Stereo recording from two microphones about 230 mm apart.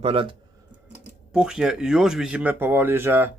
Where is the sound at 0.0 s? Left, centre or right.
Right.